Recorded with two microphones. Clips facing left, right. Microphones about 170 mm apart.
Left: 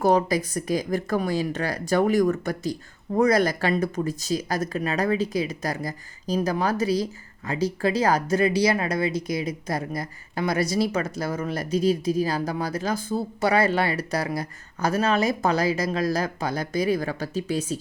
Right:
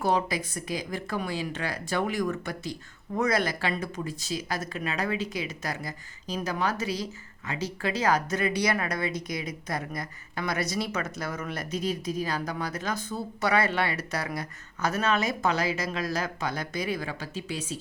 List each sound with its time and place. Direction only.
0.0 s a woman's voice: 40° left (ahead or behind)